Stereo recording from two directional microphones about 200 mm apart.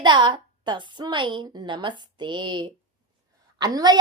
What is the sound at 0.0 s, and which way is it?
A woman's voice, 25° right (ahead or behind).